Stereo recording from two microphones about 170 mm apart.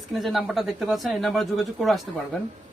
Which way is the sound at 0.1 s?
Centre (ahead or behind).